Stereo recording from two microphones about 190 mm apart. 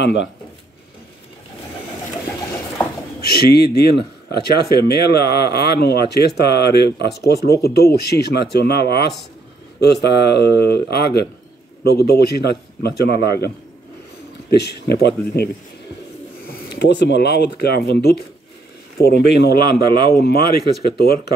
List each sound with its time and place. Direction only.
0.0 s speech: 65° left (ahead or behind)
3.2 s speech: 55° left (ahead or behind)
14.5 s speech: 60° left (ahead or behind)
16.4 s speech: 60° left (ahead or behind)
19.8 s a man's voice: 25° right (ahead or behind)
20.1 s speech: 55° left (ahead or behind)